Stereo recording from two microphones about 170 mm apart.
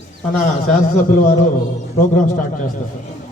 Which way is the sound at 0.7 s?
50° left (ahead or behind).